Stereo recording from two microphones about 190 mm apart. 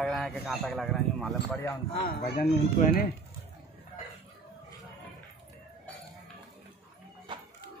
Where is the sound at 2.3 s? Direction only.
50° left (ahead or behind).